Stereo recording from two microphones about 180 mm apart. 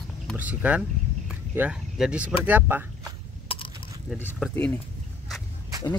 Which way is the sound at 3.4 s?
30° left (ahead or behind).